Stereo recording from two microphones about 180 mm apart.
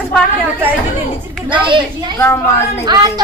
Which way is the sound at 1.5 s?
25° right (ahead or behind).